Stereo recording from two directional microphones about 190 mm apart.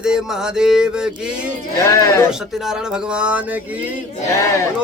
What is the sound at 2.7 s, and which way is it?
Speech, 5° right (ahead or behind).